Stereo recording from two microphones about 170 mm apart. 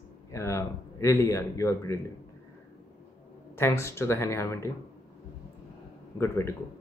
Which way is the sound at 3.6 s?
15° left (ahead or behind).